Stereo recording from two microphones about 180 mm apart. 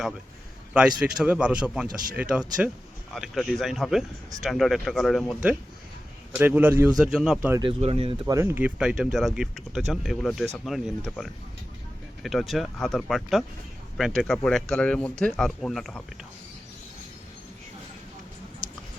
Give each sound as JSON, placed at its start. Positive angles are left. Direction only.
{"t": 0.7, "sound": "a man's voice", "side_deg": -5}
{"t": 7.6, "sound": "speech", "side_deg": -30}
{"t": 8.3, "sound": "speech", "side_deg": -15}